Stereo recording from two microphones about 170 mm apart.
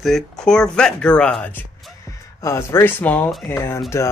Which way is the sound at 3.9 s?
15° left (ahead or behind).